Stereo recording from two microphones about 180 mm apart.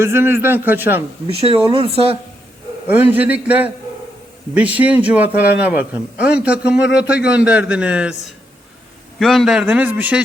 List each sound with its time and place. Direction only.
0.0 s a man's voice: 15° right (ahead or behind)
1.3 s speech: 30° right (ahead or behind)
2.8 s a man's voice: 10° right (ahead or behind)
9.1 s a man's voice: centre (ahead or behind)